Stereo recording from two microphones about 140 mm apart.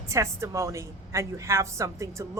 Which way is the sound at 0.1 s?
20° right (ahead or behind).